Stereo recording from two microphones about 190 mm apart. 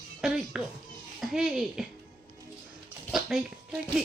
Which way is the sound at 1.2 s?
5° right (ahead or behind).